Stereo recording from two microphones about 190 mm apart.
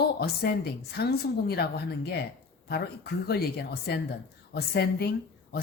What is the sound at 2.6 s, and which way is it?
Speech, 55° left (ahead or behind).